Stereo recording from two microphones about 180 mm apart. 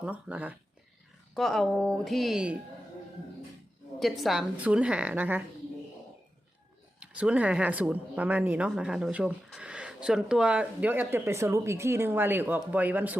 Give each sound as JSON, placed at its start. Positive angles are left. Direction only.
{"t": 0.0, "sound": "a woman's voice", "side_deg": -10}
{"t": 4.0, "sound": "speech", "side_deg": 0}
{"t": 7.0, "sound": "speech", "side_deg": -5}